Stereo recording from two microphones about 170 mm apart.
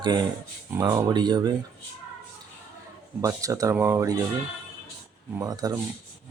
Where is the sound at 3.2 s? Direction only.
20° right (ahead or behind).